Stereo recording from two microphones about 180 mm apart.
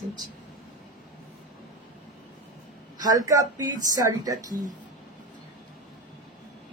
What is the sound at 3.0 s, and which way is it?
A woman's voice, 20° right (ahead or behind).